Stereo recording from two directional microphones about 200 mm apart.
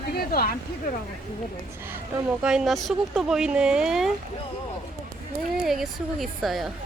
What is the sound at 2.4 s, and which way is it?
Speech, 5° right (ahead or behind).